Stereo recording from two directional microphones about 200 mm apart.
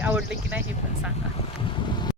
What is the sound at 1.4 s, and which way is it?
Boat, 25° left (ahead or behind).